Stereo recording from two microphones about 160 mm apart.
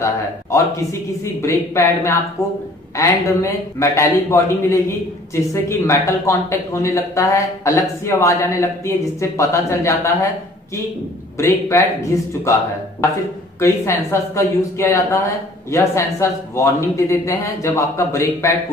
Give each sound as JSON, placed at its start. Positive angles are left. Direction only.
{"t": 0.0, "sound": "a man's voice", "side_deg": 20}
{"t": 11.3, "sound": "a man's voice", "side_deg": 15}
{"t": 13.6, "sound": "a man's voice", "side_deg": 15}